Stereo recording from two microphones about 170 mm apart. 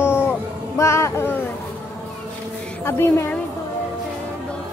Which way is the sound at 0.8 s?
15° left (ahead or behind).